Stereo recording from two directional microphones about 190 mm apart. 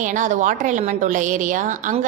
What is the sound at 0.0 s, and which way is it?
A woman's voice, 40° right (ahead or behind).